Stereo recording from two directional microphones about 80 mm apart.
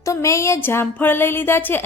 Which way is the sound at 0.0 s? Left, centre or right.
Left.